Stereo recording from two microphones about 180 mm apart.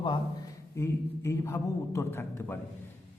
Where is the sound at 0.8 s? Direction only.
15° left (ahead or behind).